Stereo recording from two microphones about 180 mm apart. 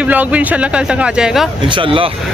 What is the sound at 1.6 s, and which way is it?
Speech, 30° right (ahead or behind).